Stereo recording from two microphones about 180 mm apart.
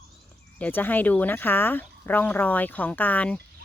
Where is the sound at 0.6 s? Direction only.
10° left (ahead or behind).